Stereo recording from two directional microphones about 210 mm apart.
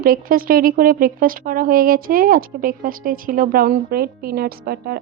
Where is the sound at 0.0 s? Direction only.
45° right (ahead or behind).